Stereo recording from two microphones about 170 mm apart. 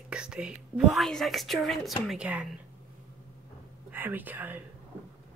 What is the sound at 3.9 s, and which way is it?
Speech, 10° right (ahead or behind).